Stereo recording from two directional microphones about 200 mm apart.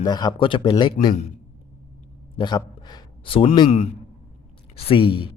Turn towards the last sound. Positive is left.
turn(degrees=25)  # may be behind; listen again after turning